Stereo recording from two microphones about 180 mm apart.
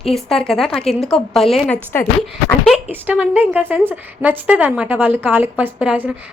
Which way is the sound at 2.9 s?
10° right (ahead or behind).